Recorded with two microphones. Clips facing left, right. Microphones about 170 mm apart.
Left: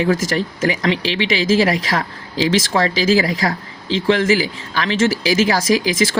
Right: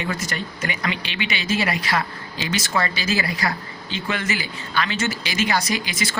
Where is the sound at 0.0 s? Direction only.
90° left.